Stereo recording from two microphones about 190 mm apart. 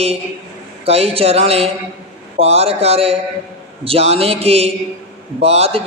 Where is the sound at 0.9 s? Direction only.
30° right (ahead or behind).